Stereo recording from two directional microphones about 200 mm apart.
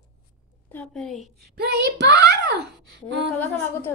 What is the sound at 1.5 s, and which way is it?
A child's voice, 55° right (ahead or behind).